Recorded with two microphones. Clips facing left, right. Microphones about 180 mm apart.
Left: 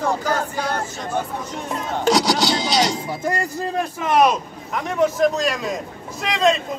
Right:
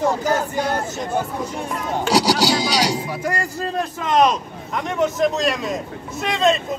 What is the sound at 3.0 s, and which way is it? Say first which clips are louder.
A man's voice: left 1 dB; 20° left (ahead or behind).